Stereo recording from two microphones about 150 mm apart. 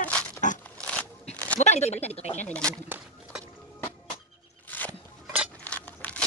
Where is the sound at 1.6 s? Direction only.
45° left (ahead or behind).